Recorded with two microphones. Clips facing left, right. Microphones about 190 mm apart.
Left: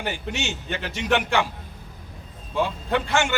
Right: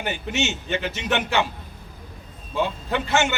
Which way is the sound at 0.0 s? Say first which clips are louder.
Right 3 dB; 20° right (ahead or behind).